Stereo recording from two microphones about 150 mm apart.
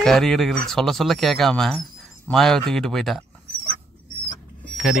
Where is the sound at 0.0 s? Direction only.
5° left (ahead or behind).